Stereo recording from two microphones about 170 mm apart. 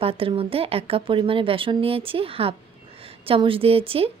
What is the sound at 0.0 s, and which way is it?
Speech, 35° right (ahead or behind).